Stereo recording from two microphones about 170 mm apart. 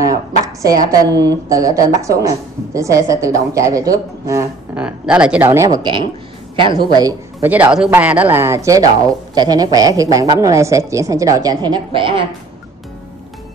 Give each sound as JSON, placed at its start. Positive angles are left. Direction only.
{"t": 0.0, "sound": "a woman's voice", "side_deg": -20}
{"t": 4.8, "sound": "speech", "side_deg": -5}
{"t": 7.4, "sound": "a woman's voice", "side_deg": -10}